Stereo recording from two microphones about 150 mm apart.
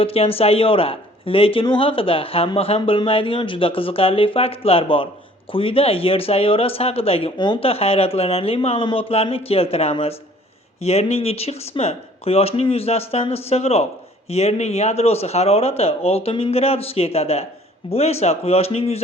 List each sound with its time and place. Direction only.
0.0 s speech: 40° left (ahead or behind)